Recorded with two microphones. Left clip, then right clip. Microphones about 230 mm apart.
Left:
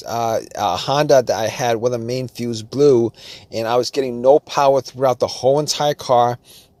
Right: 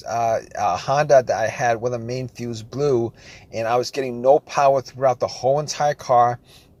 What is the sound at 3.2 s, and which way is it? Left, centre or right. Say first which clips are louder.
Speech: left 2 dB; left.